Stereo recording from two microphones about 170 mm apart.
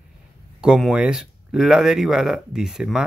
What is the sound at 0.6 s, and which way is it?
A man's voice, 5° right (ahead or behind).